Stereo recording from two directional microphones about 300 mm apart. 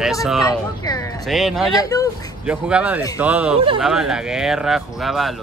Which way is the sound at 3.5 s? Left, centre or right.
Centre.